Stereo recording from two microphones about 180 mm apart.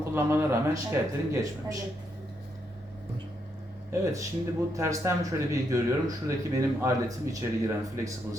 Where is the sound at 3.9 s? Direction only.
15° right (ahead or behind).